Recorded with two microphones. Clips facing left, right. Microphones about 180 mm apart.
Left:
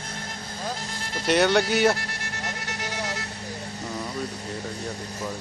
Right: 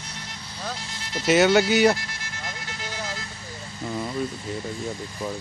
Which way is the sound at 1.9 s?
65° left (ahead or behind).